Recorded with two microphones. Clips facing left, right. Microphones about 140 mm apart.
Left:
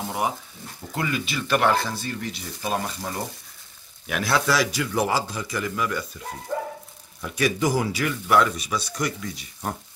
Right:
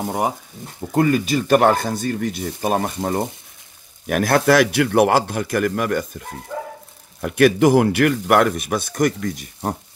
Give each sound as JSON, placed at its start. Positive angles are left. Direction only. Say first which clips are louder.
{"t": 0.0, "sound": "speech", "louder": "right 5 dB", "side_deg": -45}